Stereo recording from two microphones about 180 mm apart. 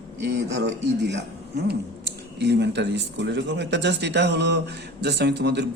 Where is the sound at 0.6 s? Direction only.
70° right (ahead or behind).